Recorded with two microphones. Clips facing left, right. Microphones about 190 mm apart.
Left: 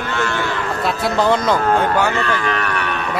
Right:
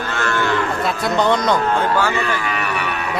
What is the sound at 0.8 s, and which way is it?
Speech, 5° left (ahead or behind).